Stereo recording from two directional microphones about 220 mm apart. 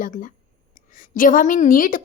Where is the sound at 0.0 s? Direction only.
35° left (ahead or behind).